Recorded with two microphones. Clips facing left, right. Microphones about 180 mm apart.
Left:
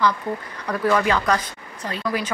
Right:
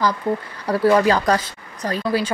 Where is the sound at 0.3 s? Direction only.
30° right (ahead or behind).